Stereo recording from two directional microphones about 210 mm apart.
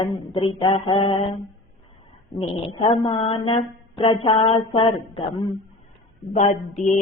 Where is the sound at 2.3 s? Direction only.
25° left (ahead or behind).